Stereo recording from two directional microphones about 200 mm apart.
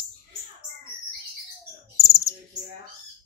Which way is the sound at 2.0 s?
15° left (ahead or behind).